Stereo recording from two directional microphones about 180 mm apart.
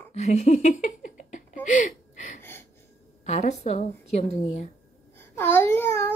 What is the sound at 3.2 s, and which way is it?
A woman's voice, 35° left (ahead or behind).